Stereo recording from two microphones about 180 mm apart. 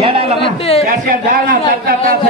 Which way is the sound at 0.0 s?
35° right (ahead or behind).